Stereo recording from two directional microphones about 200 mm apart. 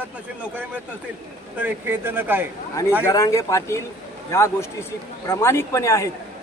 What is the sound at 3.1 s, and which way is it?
A man's voice, 15° left (ahead or behind).